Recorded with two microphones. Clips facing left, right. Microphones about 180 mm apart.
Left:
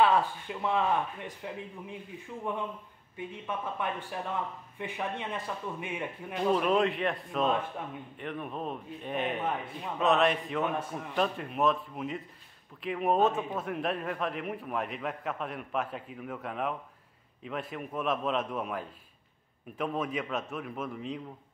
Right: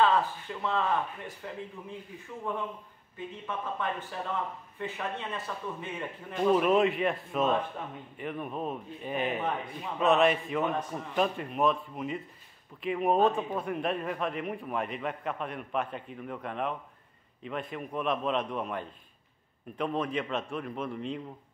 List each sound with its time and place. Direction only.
0.0 s speech: 15° left (ahead or behind)
3.4 s speech: 15° left (ahead or behind)
6.4 s a man's voice: 5° right (ahead or behind)